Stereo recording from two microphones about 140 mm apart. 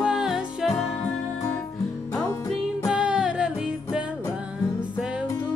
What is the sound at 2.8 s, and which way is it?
Music, 5° right (ahead or behind).